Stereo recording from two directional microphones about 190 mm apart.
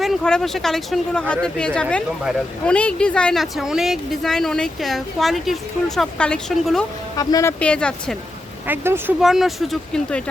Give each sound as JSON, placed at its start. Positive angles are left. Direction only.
{"t": 0.0, "sound": "speech", "side_deg": 0}
{"t": 7.2, "sound": "speech", "side_deg": 20}
{"t": 7.6, "sound": "speech", "side_deg": 5}
{"t": 8.6, "sound": "speech", "side_deg": -10}